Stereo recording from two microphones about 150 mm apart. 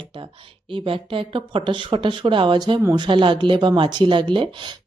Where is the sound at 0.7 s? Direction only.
35° right (ahead or behind).